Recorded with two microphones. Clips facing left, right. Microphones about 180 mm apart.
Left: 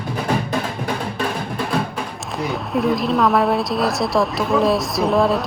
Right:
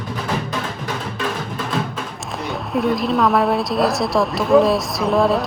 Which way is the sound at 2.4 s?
Centre (ahead or behind).